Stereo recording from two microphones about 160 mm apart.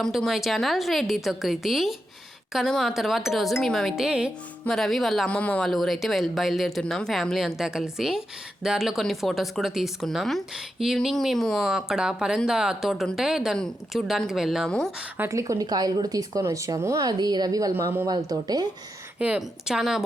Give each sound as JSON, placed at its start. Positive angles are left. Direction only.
{"t": 0.0, "sound": "speech", "side_deg": 0}
{"t": 15.2, "sound": "speech", "side_deg": -20}
{"t": 19.2, "sound": "speech", "side_deg": -5}